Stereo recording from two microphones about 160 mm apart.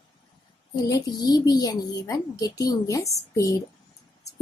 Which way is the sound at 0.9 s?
25° left (ahead or behind).